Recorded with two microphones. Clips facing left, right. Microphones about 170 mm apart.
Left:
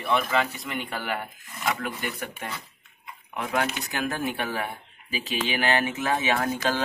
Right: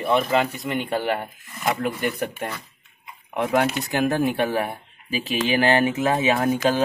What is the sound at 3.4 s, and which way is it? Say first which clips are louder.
Speech: right 6 dB; 25° right (ahead or behind).